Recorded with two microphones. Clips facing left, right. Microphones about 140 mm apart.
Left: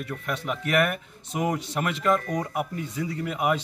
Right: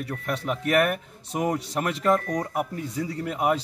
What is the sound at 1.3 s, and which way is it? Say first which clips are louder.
Speech: right 1 dB; 30° right (ahead or behind).